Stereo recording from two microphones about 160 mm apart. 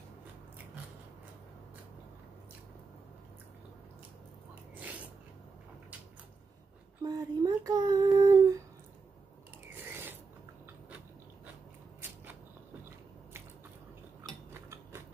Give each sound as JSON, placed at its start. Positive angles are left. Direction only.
{"t": 7.1, "sound": "child singing", "side_deg": -25}
{"t": 9.7, "sound": "filing", "side_deg": -10}